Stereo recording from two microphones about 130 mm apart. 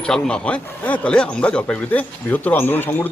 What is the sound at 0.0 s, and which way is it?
Speech, 5° left (ahead or behind).